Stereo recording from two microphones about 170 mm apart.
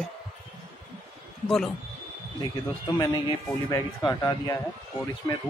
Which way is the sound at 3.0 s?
25° left (ahead or behind).